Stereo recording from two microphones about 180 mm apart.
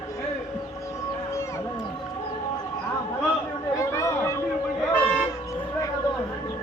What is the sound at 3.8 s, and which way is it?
Chatter, 15° left (ahead or behind).